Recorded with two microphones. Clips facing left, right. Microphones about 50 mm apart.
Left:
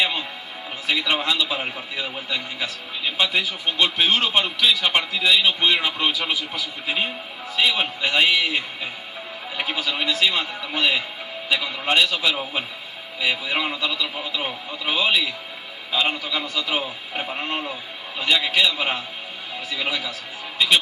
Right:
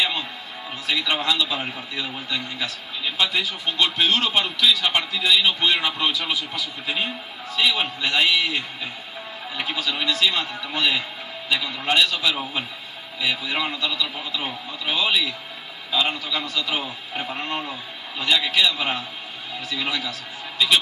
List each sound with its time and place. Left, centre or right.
0.8 s a man's voice: left
5.6 s a man's voice: centre